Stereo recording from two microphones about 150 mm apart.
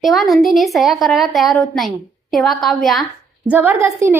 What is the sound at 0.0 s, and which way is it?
A woman's voice, centre (ahead or behind).